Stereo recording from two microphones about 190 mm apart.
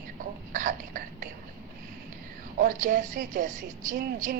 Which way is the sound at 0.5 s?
45° right (ahead or behind).